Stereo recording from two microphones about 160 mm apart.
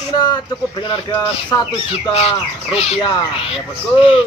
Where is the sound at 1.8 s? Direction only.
35° left (ahead or behind).